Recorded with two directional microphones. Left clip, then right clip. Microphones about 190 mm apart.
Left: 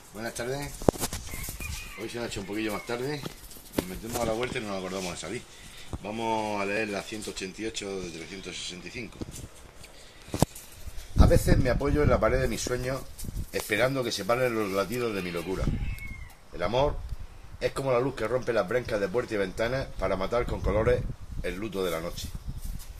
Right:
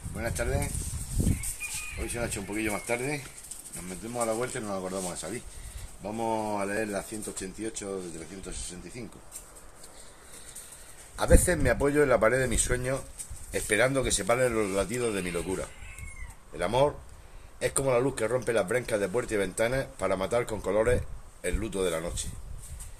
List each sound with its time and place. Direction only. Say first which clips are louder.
0.2 s speech: right 1 dB; centre (ahead or behind)
2.0 s speech: even; 10° right (ahead or behind)
4.2 s speech: even; 5° right (ahead or behind)
11.1 s speech: even; 15° right (ahead or behind)